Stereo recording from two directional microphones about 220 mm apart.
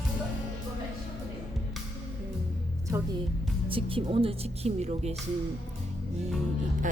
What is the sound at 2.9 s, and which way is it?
Speech, 10° right (ahead or behind).